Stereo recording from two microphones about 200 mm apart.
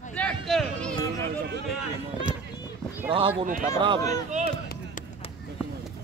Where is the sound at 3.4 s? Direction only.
40° right (ahead or behind).